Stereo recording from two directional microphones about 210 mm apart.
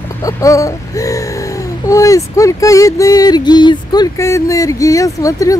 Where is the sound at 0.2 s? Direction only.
15° left (ahead or behind).